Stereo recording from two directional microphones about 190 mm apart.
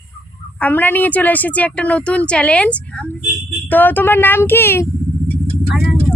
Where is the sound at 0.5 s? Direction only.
10° left (ahead or behind).